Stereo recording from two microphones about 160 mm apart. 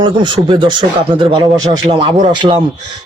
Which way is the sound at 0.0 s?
30° right (ahead or behind).